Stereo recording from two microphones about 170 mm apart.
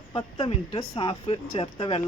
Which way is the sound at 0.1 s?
30° left (ahead or behind).